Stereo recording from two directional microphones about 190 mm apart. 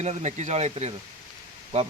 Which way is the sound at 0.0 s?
35° right (ahead or behind).